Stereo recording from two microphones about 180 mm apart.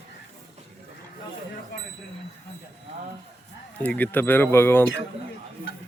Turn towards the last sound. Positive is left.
turn(degrees=10)  # may be behind; listen again after turning